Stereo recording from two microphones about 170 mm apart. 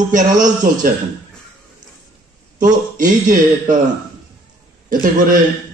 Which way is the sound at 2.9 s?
50° right (ahead or behind).